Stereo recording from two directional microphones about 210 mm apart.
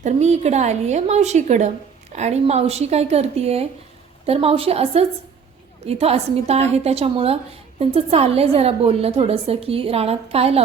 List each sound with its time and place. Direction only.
0.0 s a woman's voice: 30° right (ahead or behind)